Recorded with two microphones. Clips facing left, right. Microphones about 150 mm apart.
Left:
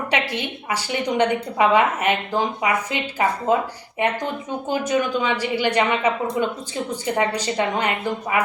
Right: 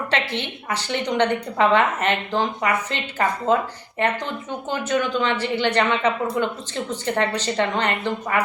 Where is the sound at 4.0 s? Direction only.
10° left (ahead or behind).